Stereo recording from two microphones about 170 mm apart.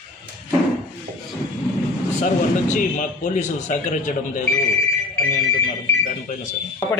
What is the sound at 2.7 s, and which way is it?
A man's voice, 50° left (ahead or behind).